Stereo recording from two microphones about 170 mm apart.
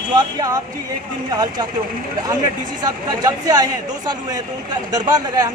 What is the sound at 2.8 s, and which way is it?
Speech, 20° right (ahead or behind).